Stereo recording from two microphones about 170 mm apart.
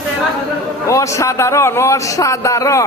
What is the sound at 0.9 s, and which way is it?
A man's voice, 15° left (ahead or behind).